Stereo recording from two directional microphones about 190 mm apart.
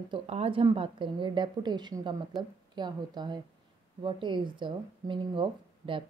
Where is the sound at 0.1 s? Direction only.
30° right (ahead or behind).